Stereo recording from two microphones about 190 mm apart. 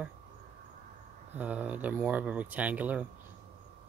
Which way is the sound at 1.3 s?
5° right (ahead or behind).